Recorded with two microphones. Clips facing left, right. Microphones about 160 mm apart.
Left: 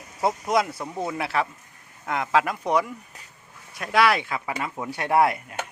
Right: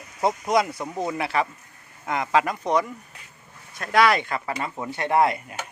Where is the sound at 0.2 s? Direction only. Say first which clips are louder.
Right 1 dB; 5° left (ahead or behind).